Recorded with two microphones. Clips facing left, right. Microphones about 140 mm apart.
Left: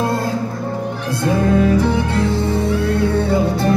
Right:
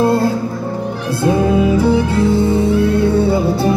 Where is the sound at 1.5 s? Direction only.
10° right (ahead or behind).